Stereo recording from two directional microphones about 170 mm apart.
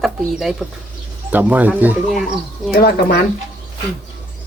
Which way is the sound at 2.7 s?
65° left (ahead or behind).